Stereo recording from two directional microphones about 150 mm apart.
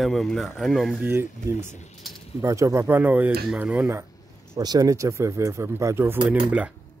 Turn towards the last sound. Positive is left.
turn(degrees=-10)  # may be behind; listen again after turning